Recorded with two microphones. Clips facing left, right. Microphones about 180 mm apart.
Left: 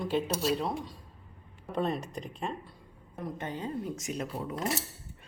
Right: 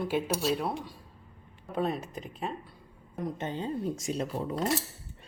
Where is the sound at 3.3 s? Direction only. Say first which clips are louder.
Right 1 dB; 25° right (ahead or behind).